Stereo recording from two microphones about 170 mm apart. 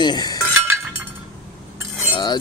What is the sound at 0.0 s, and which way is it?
Chink, 25° left (ahead or behind).